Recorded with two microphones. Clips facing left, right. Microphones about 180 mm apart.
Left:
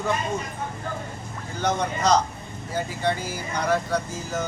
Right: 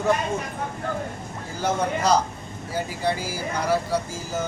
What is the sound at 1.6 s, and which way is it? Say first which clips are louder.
Speech: right 1 dB; 5° right (ahead or behind).